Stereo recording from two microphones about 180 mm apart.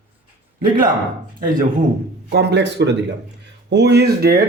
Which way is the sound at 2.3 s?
70° right (ahead or behind).